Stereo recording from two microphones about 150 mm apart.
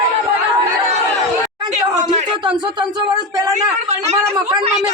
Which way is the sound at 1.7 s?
50° right (ahead or behind).